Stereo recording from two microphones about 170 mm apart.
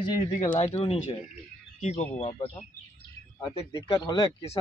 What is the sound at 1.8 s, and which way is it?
Speech, 45° left (ahead or behind).